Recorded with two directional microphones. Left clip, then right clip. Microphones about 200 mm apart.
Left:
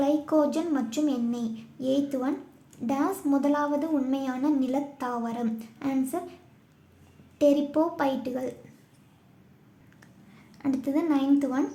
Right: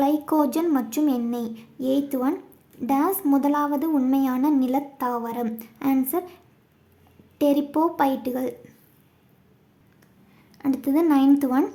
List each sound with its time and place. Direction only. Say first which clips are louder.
0.0 s a woman's voice: right 3 dB; 20° right (ahead or behind)
7.3 s a woman's voice: right 1 dB; 15° right (ahead or behind)
10.6 s a woman's voice: right 6 dB; 15° right (ahead or behind)